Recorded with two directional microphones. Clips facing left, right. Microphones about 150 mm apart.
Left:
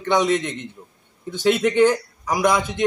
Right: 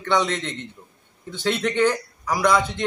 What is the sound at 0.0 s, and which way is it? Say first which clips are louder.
Speech: left 3 dB; 15° left (ahead or behind).